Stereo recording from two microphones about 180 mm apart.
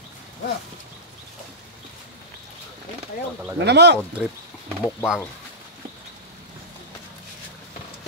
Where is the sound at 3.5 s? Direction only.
70° right (ahead or behind).